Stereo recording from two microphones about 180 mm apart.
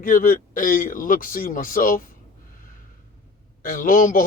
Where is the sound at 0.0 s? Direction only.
50° left (ahead or behind).